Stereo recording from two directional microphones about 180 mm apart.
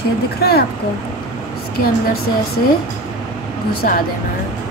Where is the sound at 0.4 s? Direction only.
60° left (ahead or behind).